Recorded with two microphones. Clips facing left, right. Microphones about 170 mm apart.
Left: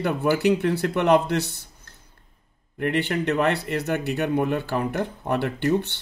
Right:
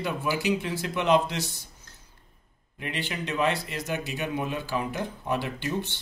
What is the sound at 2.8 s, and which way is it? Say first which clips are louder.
A man's voice: left 9 dB; 60° left (ahead or behind).